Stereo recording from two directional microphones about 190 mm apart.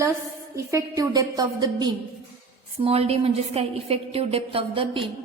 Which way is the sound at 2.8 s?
30° right (ahead or behind).